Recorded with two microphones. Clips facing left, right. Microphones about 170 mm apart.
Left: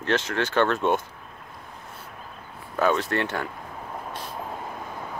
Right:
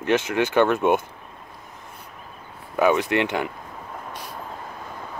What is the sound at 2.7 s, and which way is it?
Speech, 15° right (ahead or behind).